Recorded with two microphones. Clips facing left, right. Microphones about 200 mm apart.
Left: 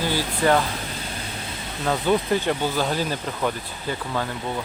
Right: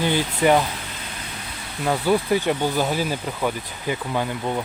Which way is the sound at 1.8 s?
10° right (ahead or behind).